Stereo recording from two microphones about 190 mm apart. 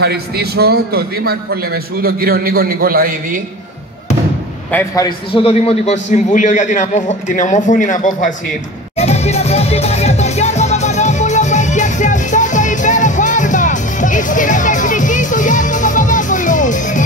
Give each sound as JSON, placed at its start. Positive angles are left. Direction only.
{"t": 0.0, "sound": "a man's voice", "side_deg": -55}
{"t": 4.6, "sound": "a man's voice", "side_deg": 15}
{"t": 5.3, "sound": "a man's voice", "side_deg": 30}
{"t": 8.9, "sound": "music", "side_deg": 35}